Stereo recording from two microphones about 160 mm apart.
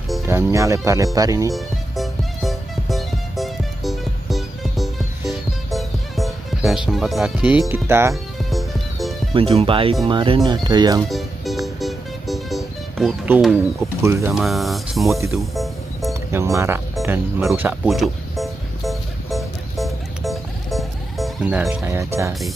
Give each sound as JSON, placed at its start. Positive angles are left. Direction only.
{"t": 0.3, "sound": "speech", "side_deg": -20}
{"t": 1.5, "sound": "music", "side_deg": 0}
{"t": 5.7, "sound": "speech", "side_deg": 0}
{"t": 8.5, "sound": "music", "side_deg": 0}
{"t": 9.3, "sound": "speech", "side_deg": -35}
{"t": 11.0, "sound": "music", "side_deg": 0}
{"t": 14.0, "sound": "speech", "side_deg": -15}
{"t": 14.3, "sound": "speech", "side_deg": 0}
{"t": 15.1, "sound": "music", "side_deg": -20}
{"t": 15.5, "sound": "music", "side_deg": 0}
{"t": 16.1, "sound": "speech", "side_deg": -15}
{"t": 17.8, "sound": "music", "side_deg": 0}
{"t": 21.5, "sound": "speech", "side_deg": -10}